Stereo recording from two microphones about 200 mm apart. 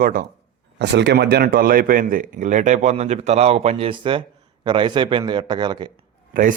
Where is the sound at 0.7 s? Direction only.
60° right (ahead or behind); by 5.9 s 20° right (ahead or behind).